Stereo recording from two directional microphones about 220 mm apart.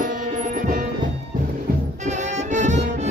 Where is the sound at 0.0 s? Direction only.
35° right (ahead or behind).